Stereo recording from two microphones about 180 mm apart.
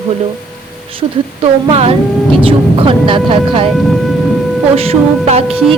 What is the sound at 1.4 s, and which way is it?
A woman's voice, 30° right (ahead or behind).